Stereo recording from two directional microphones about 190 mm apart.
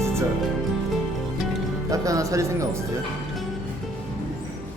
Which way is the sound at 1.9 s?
15° right (ahead or behind).